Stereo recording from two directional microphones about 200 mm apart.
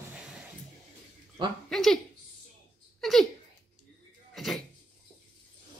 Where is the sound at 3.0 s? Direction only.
Centre (ahead or behind).